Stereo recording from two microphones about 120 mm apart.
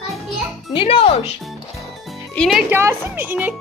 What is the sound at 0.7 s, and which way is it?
Speech, 50° left (ahead or behind).